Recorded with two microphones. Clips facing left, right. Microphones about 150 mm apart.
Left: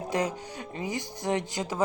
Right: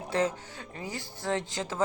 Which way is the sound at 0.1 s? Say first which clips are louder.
Right 1 dB; 15° left (ahead or behind).